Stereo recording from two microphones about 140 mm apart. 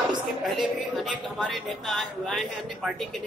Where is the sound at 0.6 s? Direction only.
Centre (ahead or behind).